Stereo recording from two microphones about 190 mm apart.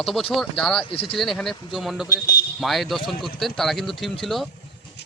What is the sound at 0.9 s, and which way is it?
Speech, 30° left (ahead or behind).